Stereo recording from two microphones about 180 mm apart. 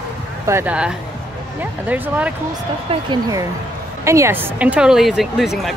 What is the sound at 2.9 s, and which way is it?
A woman's voice, 20° right (ahead or behind).